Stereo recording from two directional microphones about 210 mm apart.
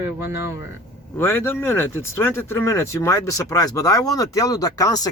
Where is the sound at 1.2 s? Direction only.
10° left (ahead or behind).